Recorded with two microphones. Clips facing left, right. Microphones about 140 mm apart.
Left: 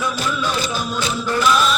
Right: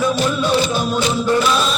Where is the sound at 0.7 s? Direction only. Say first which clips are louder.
Right 5 dB; 20° right (ahead or behind).